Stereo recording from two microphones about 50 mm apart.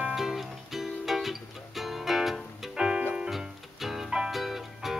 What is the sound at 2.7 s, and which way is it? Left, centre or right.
Music, centre.